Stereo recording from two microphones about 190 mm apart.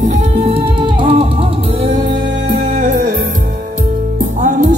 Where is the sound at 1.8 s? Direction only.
35° right (ahead or behind).